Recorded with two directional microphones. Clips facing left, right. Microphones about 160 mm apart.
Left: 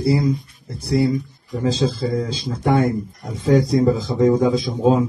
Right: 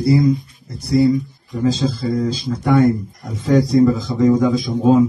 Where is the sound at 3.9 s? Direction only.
30° left (ahead or behind).